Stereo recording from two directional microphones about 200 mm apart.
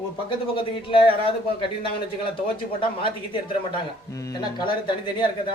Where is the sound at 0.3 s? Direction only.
25° left (ahead or behind).